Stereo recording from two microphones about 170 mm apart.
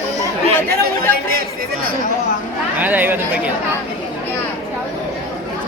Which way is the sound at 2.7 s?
10° right (ahead or behind).